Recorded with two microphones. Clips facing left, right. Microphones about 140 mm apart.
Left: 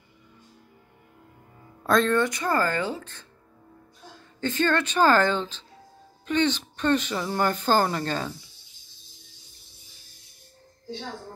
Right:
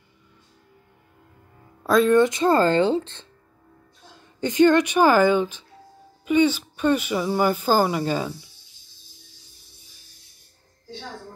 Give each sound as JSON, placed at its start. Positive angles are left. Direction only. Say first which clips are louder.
{"t": 1.8, "sound": "speech", "louder": "right 4 dB", "side_deg": -5}
{"t": 2.1, "sound": "speech", "louder": "right 7 dB", "side_deg": -20}
{"t": 4.4, "sound": "speech", "louder": "right 8 dB", "side_deg": -15}